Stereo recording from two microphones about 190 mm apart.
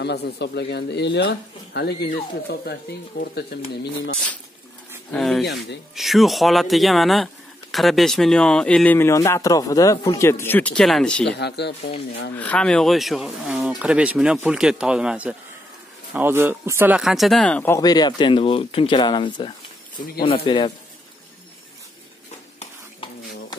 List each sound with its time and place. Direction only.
0.0 s speech: 60° left (ahead or behind)
5.1 s speech: centre (ahead or behind)
11.3 s speech: 60° left (ahead or behind)
12.4 s speech: 5° left (ahead or behind)
17.7 s speech: 20° left (ahead or behind)